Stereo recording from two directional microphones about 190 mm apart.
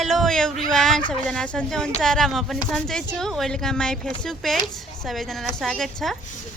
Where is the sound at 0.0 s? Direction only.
Centre (ahead or behind).